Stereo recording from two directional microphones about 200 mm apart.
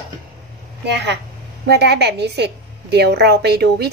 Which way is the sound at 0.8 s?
60° right (ahead or behind).